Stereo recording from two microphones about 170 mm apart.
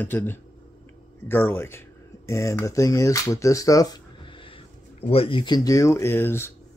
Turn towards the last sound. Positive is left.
turn(degrees=15)  # may be behind; listen again after turning